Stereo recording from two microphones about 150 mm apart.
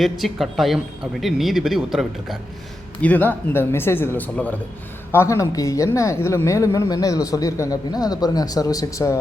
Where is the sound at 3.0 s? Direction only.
10° left (ahead or behind).